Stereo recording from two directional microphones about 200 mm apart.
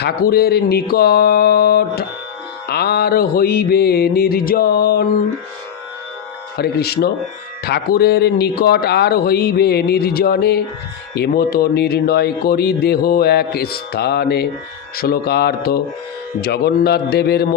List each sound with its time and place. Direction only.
0.0 s speech: 50° left (ahead or behind)
6.6 s speech: 50° left (ahead or behind)